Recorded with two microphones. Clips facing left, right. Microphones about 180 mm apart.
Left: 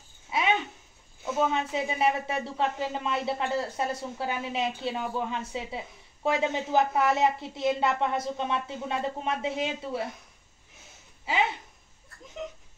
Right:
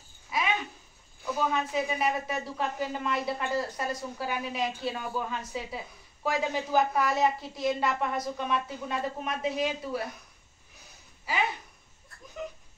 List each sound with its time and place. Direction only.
0.3 s babbling: 25° left (ahead or behind)
1.2 s speech: 25° left (ahead or behind)
10.8 s a sound: 25° left (ahead or behind)